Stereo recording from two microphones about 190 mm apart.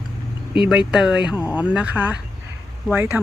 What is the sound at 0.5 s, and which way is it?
Speech, 5° right (ahead or behind).